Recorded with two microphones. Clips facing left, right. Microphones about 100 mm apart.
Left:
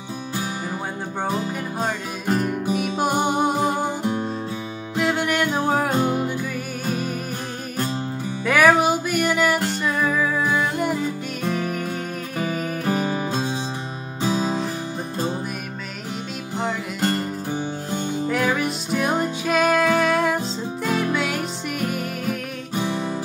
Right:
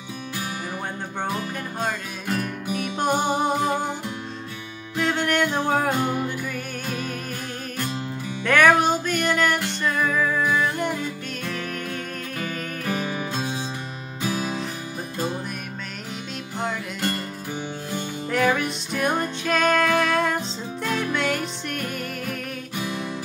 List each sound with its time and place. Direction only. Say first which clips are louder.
1.2 s music: left 3 dB; 25° left (ahead or behind)
2.7 s music: even; 5° left (ahead or behind)
4.9 s music: left 1 dB; 5° left (ahead or behind)
8.5 s music: left 1 dB; 5° left (ahead or behind)
13.0 s music: left 4 dB; 30° left (ahead or behind)
17.0 s music: left 7 dB; 30° left (ahead or behind)
18.3 s music: right 2 dB; 5° left (ahead or behind)
22.8 s music: left 5 dB; 30° left (ahead or behind)